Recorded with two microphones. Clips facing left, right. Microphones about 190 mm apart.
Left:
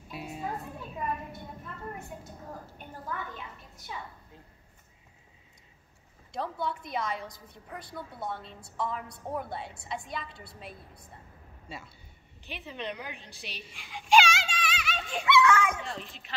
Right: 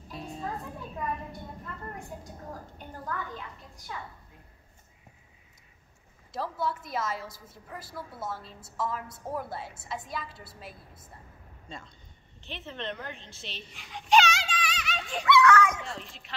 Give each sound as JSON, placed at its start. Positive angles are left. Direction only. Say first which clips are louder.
{"t": 0.1, "sound": "a sound", "louder": "even", "side_deg": 5}
{"t": 6.3, "sound": "a woman's voice", "louder": "right 1 dB", "side_deg": -5}
{"t": 15.2, "sound": "speech", "louder": "right 2 dB", "side_deg": 25}
{"t": 15.8, "sound": "a woman's voice", "louder": "left 1 dB", "side_deg": 0}